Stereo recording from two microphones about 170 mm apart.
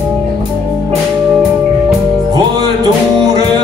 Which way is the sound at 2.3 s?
25° right (ahead or behind).